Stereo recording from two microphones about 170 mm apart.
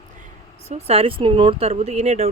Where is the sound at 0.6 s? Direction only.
35° right (ahead or behind).